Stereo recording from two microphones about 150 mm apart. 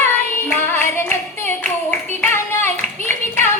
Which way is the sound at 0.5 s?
15° left (ahead or behind).